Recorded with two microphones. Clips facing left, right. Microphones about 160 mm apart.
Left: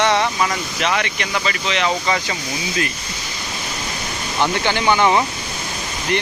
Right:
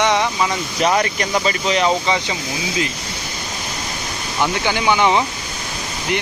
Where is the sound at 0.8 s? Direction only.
35° right (ahead or behind).